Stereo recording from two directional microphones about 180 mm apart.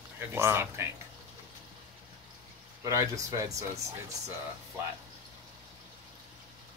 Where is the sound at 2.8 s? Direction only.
20° right (ahead or behind).